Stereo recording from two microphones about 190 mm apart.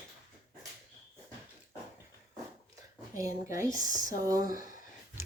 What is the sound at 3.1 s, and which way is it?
A woman's voice, 15° right (ahead or behind).